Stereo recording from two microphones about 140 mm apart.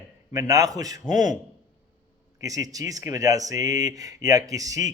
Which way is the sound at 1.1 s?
65° left (ahead or behind).